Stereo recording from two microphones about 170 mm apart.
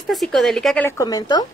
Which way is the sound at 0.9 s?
20° left (ahead or behind).